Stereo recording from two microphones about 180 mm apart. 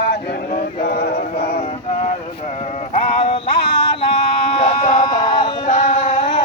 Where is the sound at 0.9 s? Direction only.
60° left (ahead or behind).